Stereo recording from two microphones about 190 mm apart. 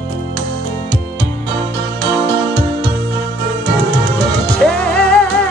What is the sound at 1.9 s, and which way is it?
Music, 60° right (ahead or behind).